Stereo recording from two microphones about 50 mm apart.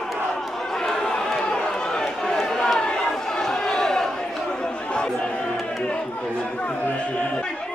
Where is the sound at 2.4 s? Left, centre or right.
Centre; by 6.8 s left.